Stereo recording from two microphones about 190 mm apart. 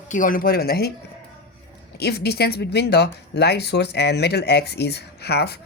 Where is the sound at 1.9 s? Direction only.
60° left (ahead or behind).